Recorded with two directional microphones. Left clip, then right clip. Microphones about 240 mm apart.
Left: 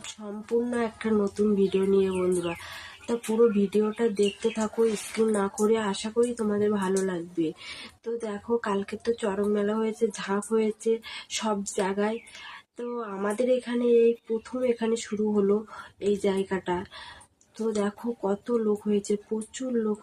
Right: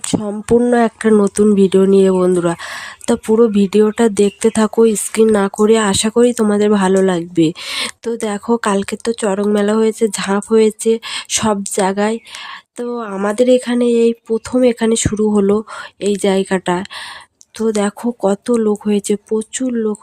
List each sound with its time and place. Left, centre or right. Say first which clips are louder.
0.2 s speech: right 13 dB; right